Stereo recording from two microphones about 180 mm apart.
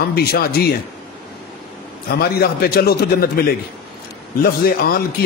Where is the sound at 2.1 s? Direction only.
60° left (ahead or behind).